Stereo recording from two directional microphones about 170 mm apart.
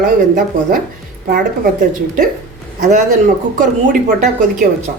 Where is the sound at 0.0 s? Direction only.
50° right (ahead or behind).